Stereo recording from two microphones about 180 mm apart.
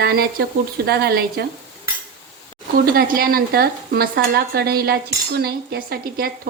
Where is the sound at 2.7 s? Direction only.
55° right (ahead or behind).